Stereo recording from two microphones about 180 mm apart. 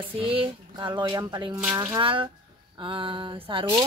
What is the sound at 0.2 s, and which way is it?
Speech, 30° right (ahead or behind).